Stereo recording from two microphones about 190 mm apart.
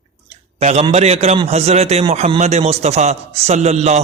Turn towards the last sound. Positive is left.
turn(degrees=-35)  # may be behind; listen again after turning